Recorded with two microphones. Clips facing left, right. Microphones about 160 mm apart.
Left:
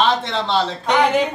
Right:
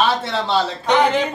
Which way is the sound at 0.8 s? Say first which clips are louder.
Even; 10° left (ahead or behind).